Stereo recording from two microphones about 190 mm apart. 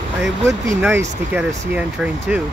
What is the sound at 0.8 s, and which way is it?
Speech, 10° right (ahead or behind).